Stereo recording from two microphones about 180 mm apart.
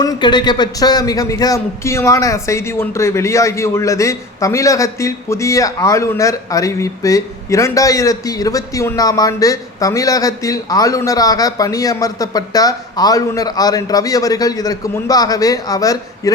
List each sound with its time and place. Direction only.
0.0 s a man's voice: 20° left (ahead or behind)